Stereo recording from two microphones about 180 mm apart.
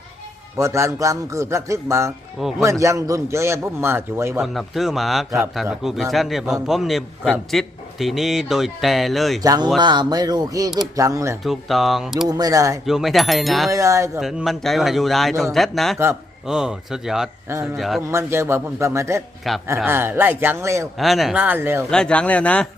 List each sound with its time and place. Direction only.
0.5 s a man's voice: 15° right (ahead or behind)
4.4 s a man's voice: centre (ahead or behind)
9.4 s a man's voice: 20° right (ahead or behind)
11.4 s a man's voice: centre (ahead or behind)
12.3 s speech: 20° right (ahead or behind)
12.8 s a man's voice: centre (ahead or behind)
13.7 s a man's voice: 15° right (ahead or behind)
14.2 s a man's voice: centre (ahead or behind)
18.1 s a man's voice: 15° right (ahead or behind)
21.0 s a man's voice: centre (ahead or behind)
21.8 s speech: 5° left (ahead or behind)